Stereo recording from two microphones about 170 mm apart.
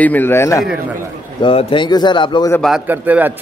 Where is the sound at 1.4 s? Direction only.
30° left (ahead or behind).